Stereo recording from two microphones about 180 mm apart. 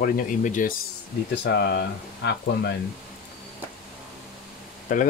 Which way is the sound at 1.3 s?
65° left (ahead or behind).